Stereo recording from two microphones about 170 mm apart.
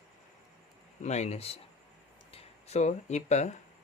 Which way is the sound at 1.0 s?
40° left (ahead or behind).